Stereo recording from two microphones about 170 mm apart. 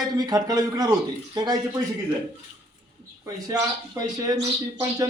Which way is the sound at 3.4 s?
20° right (ahead or behind).